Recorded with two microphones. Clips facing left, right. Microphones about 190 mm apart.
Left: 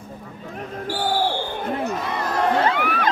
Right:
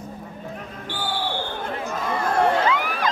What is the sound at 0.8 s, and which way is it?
Basketball bounce, 40° left (ahead or behind).